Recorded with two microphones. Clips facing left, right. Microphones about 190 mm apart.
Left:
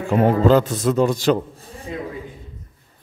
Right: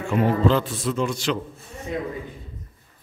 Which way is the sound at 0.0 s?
40° left (ahead or behind).